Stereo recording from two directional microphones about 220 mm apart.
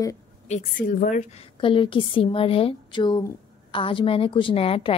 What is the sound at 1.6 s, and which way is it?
A woman's voice, 25° left (ahead or behind).